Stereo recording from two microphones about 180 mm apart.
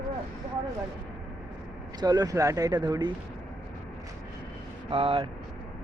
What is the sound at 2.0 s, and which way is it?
Speech, 20° right (ahead or behind).